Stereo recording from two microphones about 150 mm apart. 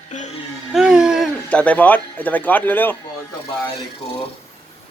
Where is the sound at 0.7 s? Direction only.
5° right (ahead or behind).